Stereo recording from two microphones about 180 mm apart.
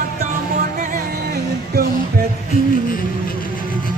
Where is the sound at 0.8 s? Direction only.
50° right (ahead or behind).